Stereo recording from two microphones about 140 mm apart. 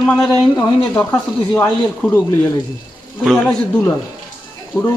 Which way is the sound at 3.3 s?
5° left (ahead or behind).